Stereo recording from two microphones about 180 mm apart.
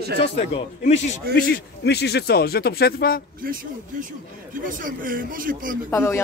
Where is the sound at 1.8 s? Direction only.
65° left (ahead or behind).